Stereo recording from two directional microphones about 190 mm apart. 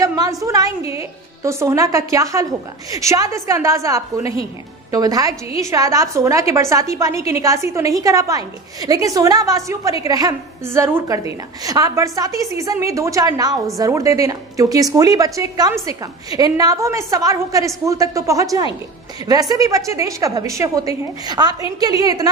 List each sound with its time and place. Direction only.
0.0 s a woman's voice: 20° right (ahead or behind)